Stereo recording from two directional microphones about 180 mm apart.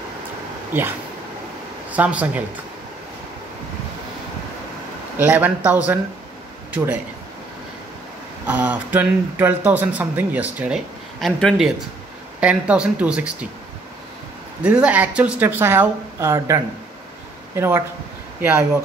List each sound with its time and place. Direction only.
0.7 s speech: 10° right (ahead or behind)
5.2 s speech: 10° right (ahead or behind)
8.5 s speech: 10° right (ahead or behind)
14.6 s speech: 5° right (ahead or behind)